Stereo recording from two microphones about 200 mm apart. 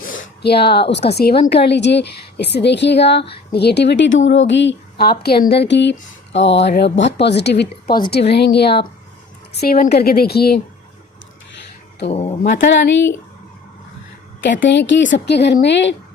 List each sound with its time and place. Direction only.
0.0 s a sound: 50° left (ahead or behind)
1.1 s a woman's voice: 50° left (ahead or behind)
11.5 s a sound: 60° left (ahead or behind)
12.1 s speech: 30° left (ahead or behind)
12.5 s speech: 55° left (ahead or behind)
14.4 s speech: 60° left (ahead or behind)